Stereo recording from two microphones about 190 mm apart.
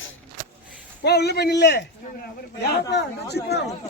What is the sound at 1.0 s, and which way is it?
Speech, 60° left (ahead or behind).